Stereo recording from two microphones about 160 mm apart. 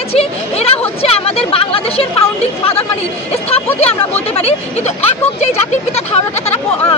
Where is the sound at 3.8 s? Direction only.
40° left (ahead or behind).